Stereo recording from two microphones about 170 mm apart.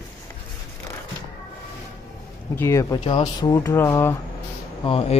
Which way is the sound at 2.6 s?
15° left (ahead or behind).